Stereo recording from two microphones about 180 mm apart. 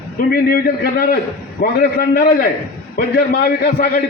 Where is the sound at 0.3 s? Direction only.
55° left (ahead or behind).